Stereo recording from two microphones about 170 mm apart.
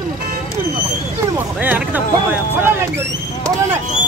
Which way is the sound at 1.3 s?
10° right (ahead or behind).